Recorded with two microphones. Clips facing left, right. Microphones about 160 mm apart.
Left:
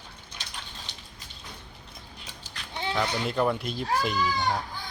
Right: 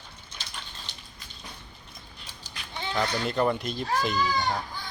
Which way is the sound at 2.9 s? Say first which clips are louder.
Right 1 dB; 5° left (ahead or behind).